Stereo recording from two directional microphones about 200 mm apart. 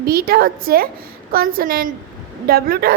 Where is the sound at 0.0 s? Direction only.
50° right (ahead or behind).